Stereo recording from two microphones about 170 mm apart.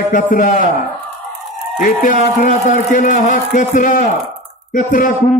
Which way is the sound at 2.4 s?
50° left (ahead or behind).